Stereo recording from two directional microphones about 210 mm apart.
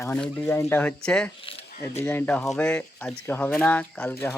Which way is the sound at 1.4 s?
25° left (ahead or behind).